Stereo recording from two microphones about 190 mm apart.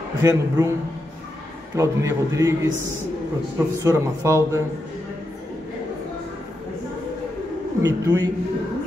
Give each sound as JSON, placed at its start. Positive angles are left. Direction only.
{"t": 0.2, "sound": "a man's voice", "side_deg": -15}
{"t": 1.8, "sound": "a man's voice", "side_deg": -15}
{"t": 7.8, "sound": "a man's voice", "side_deg": -20}